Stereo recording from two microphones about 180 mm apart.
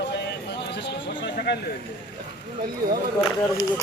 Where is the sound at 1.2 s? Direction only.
65° left (ahead or behind).